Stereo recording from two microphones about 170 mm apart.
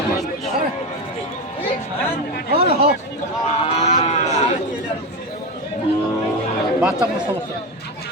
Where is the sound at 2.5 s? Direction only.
65° right (ahead or behind).